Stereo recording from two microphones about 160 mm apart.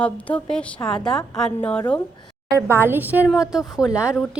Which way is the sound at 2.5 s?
15° right (ahead or behind).